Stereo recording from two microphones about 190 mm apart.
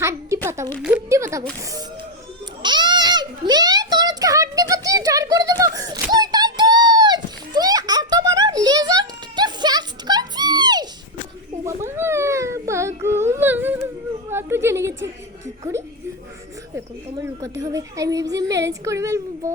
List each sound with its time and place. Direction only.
0.0 s a sound: 15° right (ahead or behind)
0.8 s speech: 5° right (ahead or behind)
1.5 s speech: 15° right (ahead or behind)
2.6 s a sound: 25° right (ahead or behind)
13.0 s yodeling: 15° right (ahead or behind)
13.8 s whimper: 10° right (ahead or behind)
17.2 s speech: 15° right (ahead or behind)